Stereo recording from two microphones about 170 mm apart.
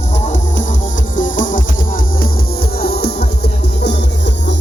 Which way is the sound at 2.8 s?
70° left (ahead or behind).